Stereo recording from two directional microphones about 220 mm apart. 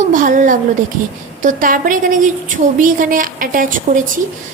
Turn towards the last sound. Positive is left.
turn(degrees=-40)  # may be behind; listen again after turning